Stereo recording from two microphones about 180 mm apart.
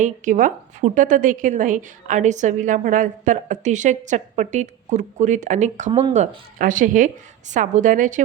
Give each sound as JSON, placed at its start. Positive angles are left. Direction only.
{"t": 0.0, "sound": "a woman's voice", "side_deg": -45}
{"t": 5.9, "sound": "speech", "side_deg": -25}
{"t": 6.1, "sound": "a woman's voice", "side_deg": -45}